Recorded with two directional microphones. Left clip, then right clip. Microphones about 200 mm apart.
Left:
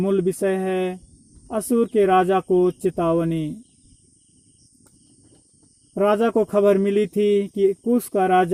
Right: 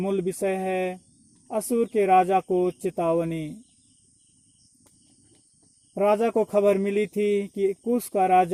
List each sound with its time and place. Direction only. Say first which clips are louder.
0.0 s speech: left 5 dB; 45° left (ahead or behind)
5.9 s speech: left 3 dB; 50° left (ahead or behind)